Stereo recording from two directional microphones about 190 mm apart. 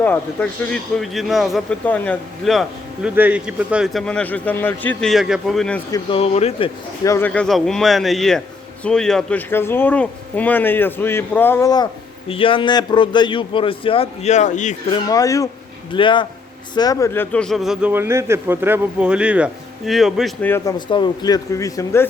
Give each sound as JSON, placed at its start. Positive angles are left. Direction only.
{"t": 0.0, "sound": "speech", "side_deg": 10}
{"t": 5.9, "sound": "a man's voice", "side_deg": 30}
{"t": 7.0, "sound": "a man's voice", "side_deg": 15}
{"t": 14.8, "sound": "a man's voice", "side_deg": 20}
{"t": 17.3, "sound": "speech", "side_deg": 0}
{"t": 20.4, "sound": "speech", "side_deg": 10}
{"t": 20.7, "sound": "a man's voice", "side_deg": 25}